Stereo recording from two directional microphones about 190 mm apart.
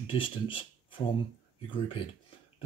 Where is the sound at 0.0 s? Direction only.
25° left (ahead or behind).